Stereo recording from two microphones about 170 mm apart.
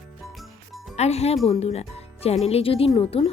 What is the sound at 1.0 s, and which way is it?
Speech, 40° left (ahead or behind).